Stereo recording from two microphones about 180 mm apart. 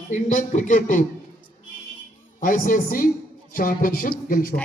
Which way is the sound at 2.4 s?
50° left (ahead or behind).